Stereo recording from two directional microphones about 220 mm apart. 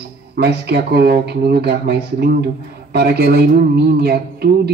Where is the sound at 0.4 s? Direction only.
50° right (ahead or behind).